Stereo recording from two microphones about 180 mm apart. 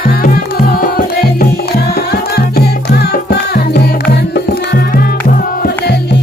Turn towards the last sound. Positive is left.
turn(degrees=55)  # may be behind; listen again after turning